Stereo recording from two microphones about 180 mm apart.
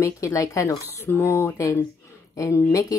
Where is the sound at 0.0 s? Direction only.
15° left (ahead or behind).